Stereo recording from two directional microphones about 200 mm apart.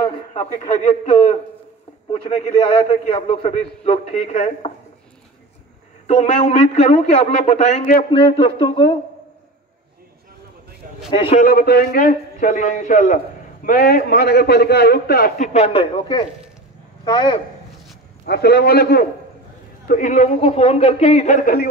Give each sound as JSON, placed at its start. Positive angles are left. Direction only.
{"t": 0.3, "sound": "a man's voice", "side_deg": 35}
{"t": 2.9, "sound": "a man's voice", "side_deg": 30}
{"t": 6.0, "sound": "a man's voice", "side_deg": 35}
{"t": 8.1, "sound": "speech", "side_deg": 25}
{"t": 11.1, "sound": "a man's voice", "side_deg": 25}
{"t": 11.3, "sound": "a man's voice", "side_deg": 50}
{"t": 18.2, "sound": "a man's voice", "side_deg": 55}
{"t": 19.9, "sound": "a man's voice", "side_deg": 40}